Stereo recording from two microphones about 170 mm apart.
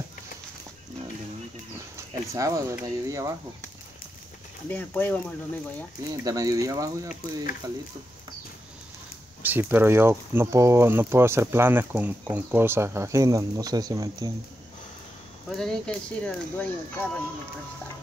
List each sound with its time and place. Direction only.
2.3 s speech: 20° right (ahead or behind)
4.6 s speech: 10° left (ahead or behind)
6.2 s speech: 20° right (ahead or behind)
9.4 s speech: 10° right (ahead or behind)
15.5 s speech: 5° left (ahead or behind)